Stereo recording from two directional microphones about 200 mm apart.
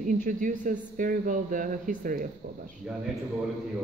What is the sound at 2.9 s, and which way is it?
Speech, 5° right (ahead or behind).